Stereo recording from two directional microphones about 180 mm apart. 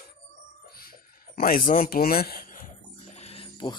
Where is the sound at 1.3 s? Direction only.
55° left (ahead or behind).